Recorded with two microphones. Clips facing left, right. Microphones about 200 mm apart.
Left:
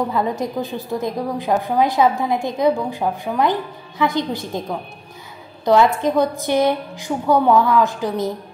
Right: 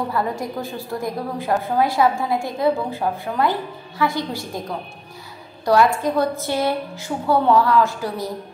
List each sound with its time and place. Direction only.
0.1 s a woman's voice: 20° left (ahead or behind)
4.0 s a woman's voice: 20° left (ahead or behind)
5.7 s a woman's voice: 20° left (ahead or behind)